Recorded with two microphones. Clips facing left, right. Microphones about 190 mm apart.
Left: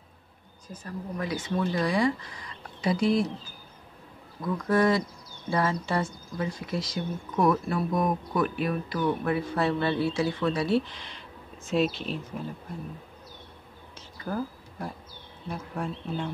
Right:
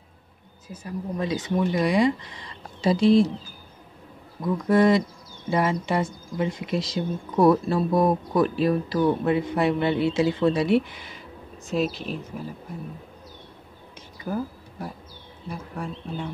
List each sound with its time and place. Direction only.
0.7 s speech: 10° right (ahead or behind)
1.1 s speech: 20° right (ahead or behind)
4.4 s speech: 20° right (ahead or behind); by 12.2 s centre (ahead or behind)
14.2 s speech: 5° right (ahead or behind)